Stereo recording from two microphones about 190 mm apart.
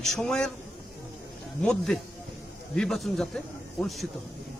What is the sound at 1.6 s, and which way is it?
A man's voice, 5° left (ahead or behind).